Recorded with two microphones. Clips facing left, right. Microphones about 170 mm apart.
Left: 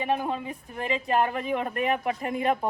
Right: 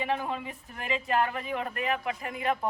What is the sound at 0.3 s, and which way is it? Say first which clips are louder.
A woman's voice: left 4 dB; 35° left (ahead or behind).